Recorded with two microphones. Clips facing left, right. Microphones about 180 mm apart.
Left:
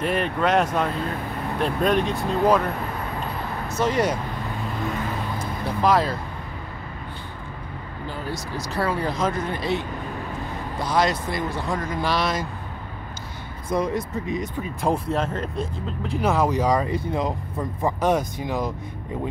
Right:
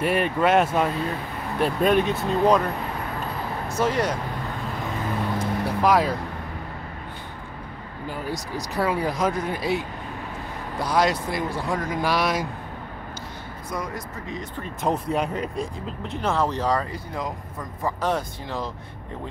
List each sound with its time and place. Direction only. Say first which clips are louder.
0.0 s speech: right 1 dB; 5° right (ahead or behind)
3.6 s a sound: even; 10° right (ahead or behind)
5.8 s speech: even; 10° right (ahead or behind)
8.3 s speech: even; 15° right (ahead or behind)
13.7 s speech: left 8 dB; 25° left (ahead or behind)
14.6 s speech: right 1 dB; 5° left (ahead or behind)
16.2 s speech: left 3 dB; 10° left (ahead or behind)